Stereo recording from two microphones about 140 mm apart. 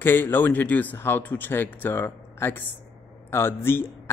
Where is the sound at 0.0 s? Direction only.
15° left (ahead or behind).